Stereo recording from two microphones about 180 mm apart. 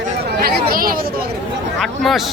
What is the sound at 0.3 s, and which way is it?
Chatter, 60° right (ahead or behind).